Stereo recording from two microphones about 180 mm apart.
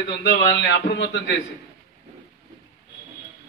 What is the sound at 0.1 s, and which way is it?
Speech, 90° left.